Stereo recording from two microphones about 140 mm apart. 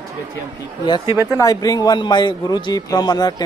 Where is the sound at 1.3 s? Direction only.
25° left (ahead or behind).